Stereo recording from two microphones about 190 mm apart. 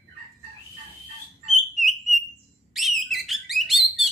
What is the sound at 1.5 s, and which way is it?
Bird, centre (ahead or behind).